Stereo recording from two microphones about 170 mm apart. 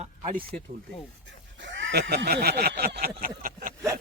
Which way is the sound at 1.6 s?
90° right.